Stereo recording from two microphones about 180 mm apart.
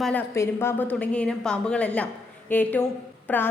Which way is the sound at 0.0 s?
10° left (ahead or behind).